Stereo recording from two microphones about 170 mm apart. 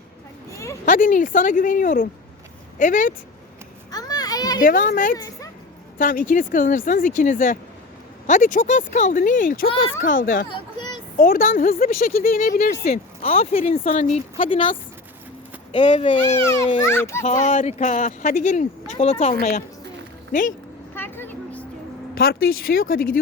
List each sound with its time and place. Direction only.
0.5 s a sound: 15° left (ahead or behind)
0.9 s speech: 50° left (ahead or behind)
3.9 s children playing: 20° left (ahead or behind)
4.6 s speech: 50° left (ahead or behind)
10.5 s a sound: 25° left (ahead or behind)
11.2 s speech: 55° left (ahead or behind)
12.8 s speech: 40° left (ahead or behind)
14.3 s speech: 30° left (ahead or behind)
15.8 s speech: 45° left (ahead or behind)
16.4 s a child's voice: 15° left (ahead or behind)
17.2 s speech: 45° left (ahead or behind)
20.9 s a sound: 10° left (ahead or behind)
22.8 s speech: 60° left (ahead or behind)